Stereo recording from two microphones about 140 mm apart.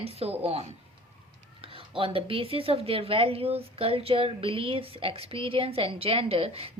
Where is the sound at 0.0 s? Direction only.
45° right (ahead or behind).